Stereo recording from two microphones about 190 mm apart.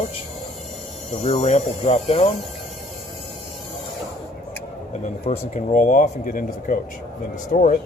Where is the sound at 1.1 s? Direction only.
30° left (ahead or behind).